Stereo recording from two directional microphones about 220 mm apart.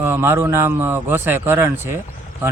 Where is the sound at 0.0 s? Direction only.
10° right (ahead or behind).